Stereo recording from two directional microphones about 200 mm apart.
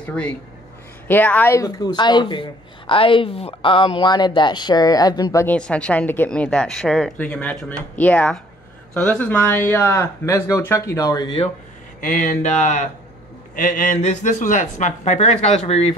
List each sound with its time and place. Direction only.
1.0 s a woman's voice: 10° left (ahead or behind); by 11.5 s 25° left (ahead or behind)
12.0 s speech: 40° left (ahead or behind)